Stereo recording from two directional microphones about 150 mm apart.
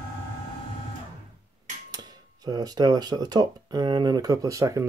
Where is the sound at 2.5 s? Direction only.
30° right (ahead or behind).